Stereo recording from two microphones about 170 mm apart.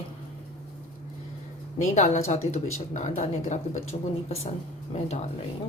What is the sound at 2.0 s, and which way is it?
A woman's voice, 45° left (ahead or behind).